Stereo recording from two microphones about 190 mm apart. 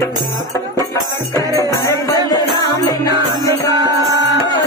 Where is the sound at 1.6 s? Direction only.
15° left (ahead or behind).